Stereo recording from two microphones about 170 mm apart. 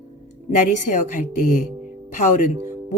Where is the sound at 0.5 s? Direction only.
45° left (ahead or behind).